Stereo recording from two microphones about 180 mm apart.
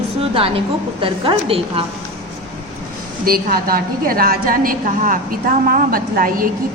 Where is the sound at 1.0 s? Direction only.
30° right (ahead or behind).